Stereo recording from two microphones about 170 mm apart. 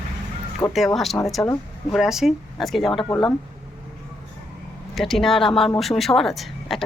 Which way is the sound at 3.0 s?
30° left (ahead or behind).